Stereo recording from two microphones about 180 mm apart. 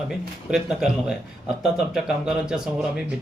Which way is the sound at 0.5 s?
Centre (ahead or behind).